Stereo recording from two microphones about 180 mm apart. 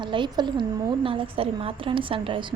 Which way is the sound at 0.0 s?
25° right (ahead or behind).